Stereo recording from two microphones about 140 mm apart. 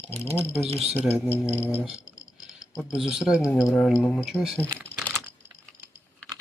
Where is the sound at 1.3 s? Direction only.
15° left (ahead or behind).